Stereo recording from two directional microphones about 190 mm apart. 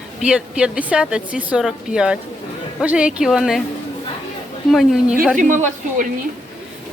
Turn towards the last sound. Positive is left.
turn(degrees=-40)  # may be behind; listen again after turning